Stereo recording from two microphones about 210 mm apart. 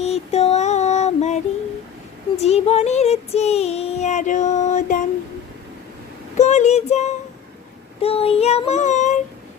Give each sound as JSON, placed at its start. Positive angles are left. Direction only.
{"t": 0.0, "sound": "female singing", "side_deg": 30}
{"t": 2.4, "sound": "child singing", "side_deg": 30}
{"t": 6.3, "sound": "child singing", "side_deg": 35}